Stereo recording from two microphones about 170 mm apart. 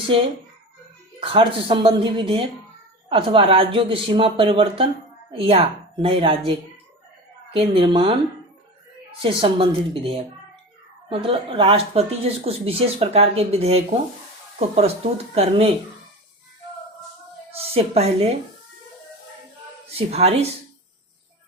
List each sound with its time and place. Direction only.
1.2 s speech: 30° right (ahead or behind)
9.2 s speech: 30° right (ahead or behind)
17.5 s speech: 35° right (ahead or behind)
19.9 s speech: 35° right (ahead or behind)